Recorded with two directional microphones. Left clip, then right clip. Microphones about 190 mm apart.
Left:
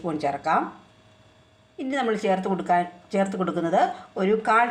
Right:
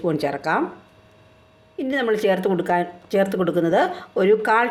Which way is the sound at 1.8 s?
45° right (ahead or behind).